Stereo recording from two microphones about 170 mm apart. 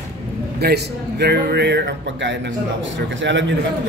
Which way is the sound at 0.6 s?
70° right (ahead or behind).